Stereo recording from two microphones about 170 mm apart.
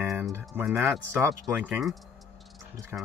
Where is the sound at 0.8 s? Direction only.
15° right (ahead or behind).